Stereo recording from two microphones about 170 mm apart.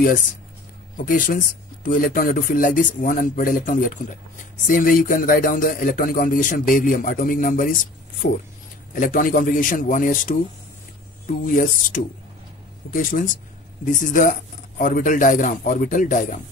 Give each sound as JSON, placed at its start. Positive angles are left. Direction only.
{"t": 0.0, "sound": "speech", "side_deg": 55}
{"t": 11.4, "sound": "speech", "side_deg": 50}
{"t": 12.8, "sound": "speech", "side_deg": 65}
{"t": 13.8, "sound": "speech", "side_deg": 50}